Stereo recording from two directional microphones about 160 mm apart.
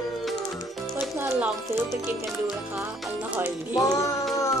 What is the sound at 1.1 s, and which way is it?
Speech, 15° right (ahead or behind).